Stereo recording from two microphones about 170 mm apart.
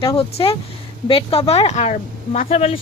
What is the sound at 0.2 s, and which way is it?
Speech, 35° left (ahead or behind).